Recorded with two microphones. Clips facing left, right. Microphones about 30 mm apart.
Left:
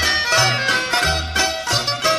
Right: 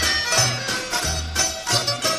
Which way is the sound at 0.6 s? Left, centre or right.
Left.